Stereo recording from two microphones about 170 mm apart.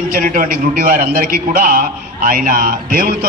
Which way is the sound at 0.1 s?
55° right (ahead or behind).